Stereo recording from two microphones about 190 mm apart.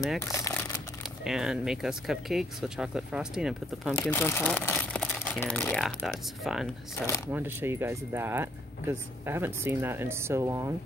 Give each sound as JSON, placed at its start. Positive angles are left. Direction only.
{"t": 0.2, "sound": "speech", "side_deg": 15}
{"t": 1.2, "sound": "speech", "side_deg": -5}
{"t": 4.1, "sound": "speech", "side_deg": 10}